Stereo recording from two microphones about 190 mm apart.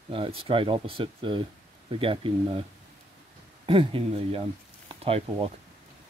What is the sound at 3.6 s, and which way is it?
Speech, 30° right (ahead or behind).